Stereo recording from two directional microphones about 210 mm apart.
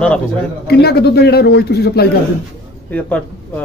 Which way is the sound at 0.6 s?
50° left (ahead or behind).